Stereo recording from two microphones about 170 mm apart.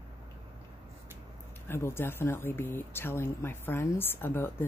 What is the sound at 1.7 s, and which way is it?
Speech, 15° left (ahead or behind).